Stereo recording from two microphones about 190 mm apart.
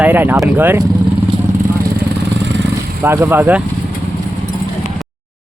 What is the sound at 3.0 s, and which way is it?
Speech, 10° right (ahead or behind).